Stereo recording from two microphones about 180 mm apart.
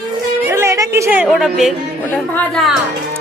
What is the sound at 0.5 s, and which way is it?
A woman's voice, 15° right (ahead or behind).